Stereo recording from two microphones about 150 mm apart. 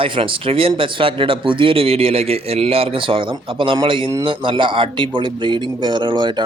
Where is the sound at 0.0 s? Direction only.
35° right (ahead or behind).